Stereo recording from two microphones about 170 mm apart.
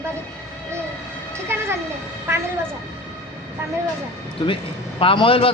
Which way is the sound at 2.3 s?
15° right (ahead or behind).